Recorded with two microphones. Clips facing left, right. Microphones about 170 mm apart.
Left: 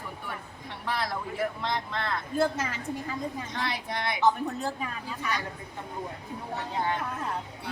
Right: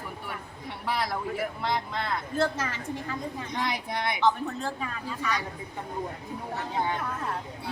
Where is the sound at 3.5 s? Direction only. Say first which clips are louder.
Right 2 dB; 15° right (ahead or behind).